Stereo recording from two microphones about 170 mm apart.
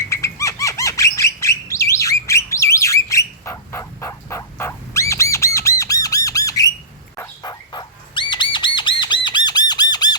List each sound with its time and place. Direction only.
0.0 s bird: 15° left (ahead or behind)
5.5 s squawk: 15° left (ahead or behind)
7.2 s bird: 25° left (ahead or behind)
9.9 s squawk: 25° left (ahead or behind)